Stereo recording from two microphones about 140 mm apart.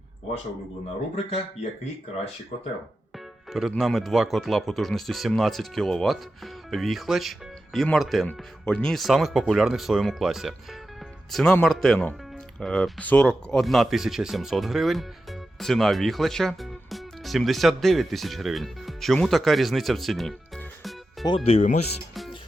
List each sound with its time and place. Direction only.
3.5 s speech: centre (ahead or behind)
21.2 s speech: 40° left (ahead or behind)